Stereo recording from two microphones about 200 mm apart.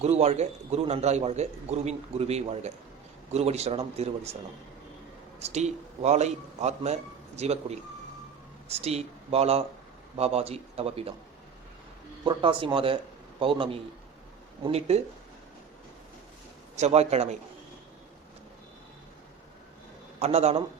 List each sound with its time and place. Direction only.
0.0 s a man's voice: 30° right (ahead or behind)
5.4 s a man's voice: 35° right (ahead or behind)
12.2 s a man's voice: 25° right (ahead or behind)
16.7 s a man's voice: 35° right (ahead or behind)
20.1 s a man's voice: 35° right (ahead or behind)